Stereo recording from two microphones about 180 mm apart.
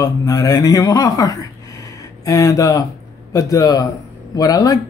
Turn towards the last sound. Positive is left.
turn(degrees=20)  # may be behind; listen again after turning